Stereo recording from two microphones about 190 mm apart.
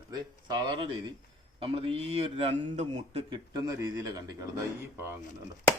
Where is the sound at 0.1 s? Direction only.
20° right (ahead or behind).